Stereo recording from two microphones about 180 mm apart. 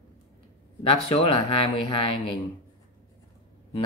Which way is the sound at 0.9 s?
30° left (ahead or behind).